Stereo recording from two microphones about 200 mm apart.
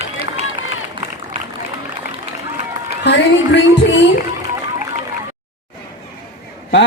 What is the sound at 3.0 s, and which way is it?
Music, 60° left (ahead or behind).